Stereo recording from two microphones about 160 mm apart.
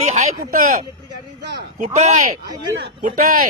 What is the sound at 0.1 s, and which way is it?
Speech, 50° right (ahead or behind).